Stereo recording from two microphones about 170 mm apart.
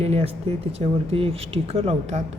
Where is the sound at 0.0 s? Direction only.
35° right (ahead or behind).